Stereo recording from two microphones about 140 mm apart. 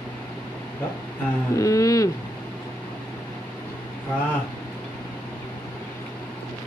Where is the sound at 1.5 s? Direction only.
25° left (ahead or behind).